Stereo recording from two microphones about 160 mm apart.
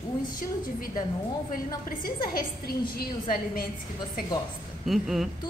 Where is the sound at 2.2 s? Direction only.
70° left (ahead or behind).